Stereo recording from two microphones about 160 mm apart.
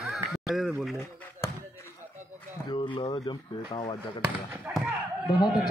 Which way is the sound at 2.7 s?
30° left (ahead or behind).